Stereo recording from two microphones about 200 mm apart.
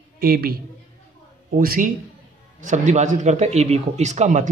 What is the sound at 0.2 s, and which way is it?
A man's voice, 50° right (ahead or behind).